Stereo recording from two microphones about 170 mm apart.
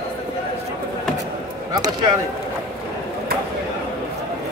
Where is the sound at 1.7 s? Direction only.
20° right (ahead or behind).